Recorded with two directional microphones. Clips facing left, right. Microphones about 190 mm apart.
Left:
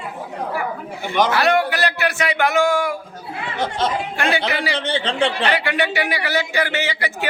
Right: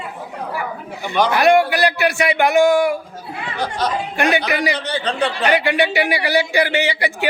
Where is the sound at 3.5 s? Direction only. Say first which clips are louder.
Even; 25° left (ahead or behind).